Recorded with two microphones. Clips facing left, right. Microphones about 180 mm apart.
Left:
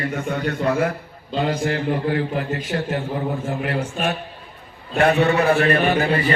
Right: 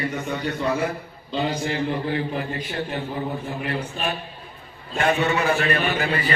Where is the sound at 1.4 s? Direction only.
55° left (ahead or behind).